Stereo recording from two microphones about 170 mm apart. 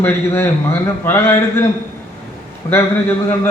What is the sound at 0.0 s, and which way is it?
A man's voice, 15° left (ahead or behind).